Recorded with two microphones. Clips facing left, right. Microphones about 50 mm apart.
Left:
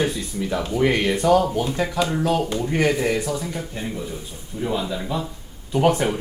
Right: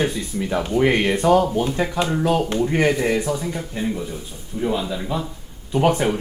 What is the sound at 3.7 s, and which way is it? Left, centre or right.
Speech, centre.